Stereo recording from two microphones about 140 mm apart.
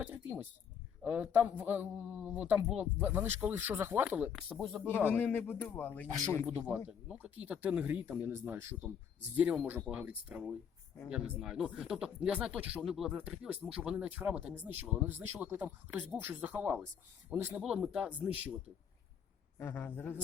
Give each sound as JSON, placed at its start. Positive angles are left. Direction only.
{"t": 0.0, "sound": "a sound", "side_deg": -10}
{"t": 1.0, "sound": "speech", "side_deg": -10}
{"t": 5.0, "sound": "a man's voice", "side_deg": 15}
{"t": 6.1, "sound": "speech", "side_deg": -25}
{"t": 6.4, "sound": "speech", "side_deg": -10}
{"t": 19.5, "sound": "a man's voice", "side_deg": 15}